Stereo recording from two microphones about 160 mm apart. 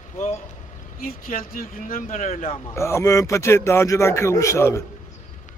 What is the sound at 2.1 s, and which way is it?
Speech, 40° left (ahead or behind).